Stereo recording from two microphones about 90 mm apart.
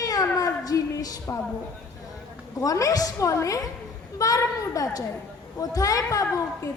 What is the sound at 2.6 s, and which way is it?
A woman's voice, 40° left (ahead or behind).